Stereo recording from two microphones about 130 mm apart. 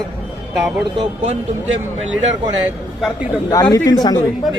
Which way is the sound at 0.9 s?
50° right (ahead or behind).